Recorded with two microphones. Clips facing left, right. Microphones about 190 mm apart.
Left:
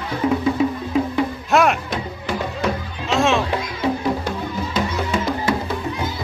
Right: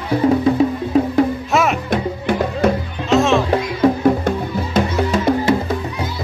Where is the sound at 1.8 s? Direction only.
55° right (ahead or behind).